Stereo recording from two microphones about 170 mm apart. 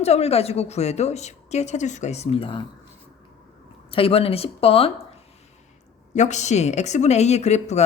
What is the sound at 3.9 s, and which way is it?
Speech, 35° left (ahead or behind).